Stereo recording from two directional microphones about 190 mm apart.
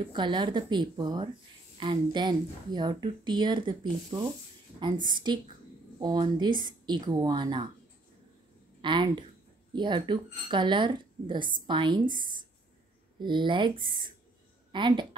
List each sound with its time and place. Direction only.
0.0 s a woman's voice: 25° right (ahead or behind)
8.8 s a woman's voice: 25° right (ahead or behind)
13.2 s a woman's voice: 25° right (ahead or behind)